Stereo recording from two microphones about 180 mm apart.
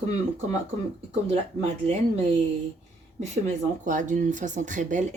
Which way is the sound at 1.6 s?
35° right (ahead or behind).